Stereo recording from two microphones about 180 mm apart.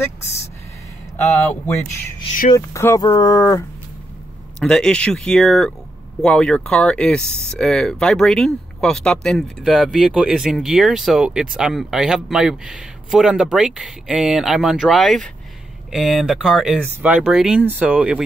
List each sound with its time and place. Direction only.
2.5 s speech: 15° left (ahead or behind)
4.6 s speech: 5° left (ahead or behind)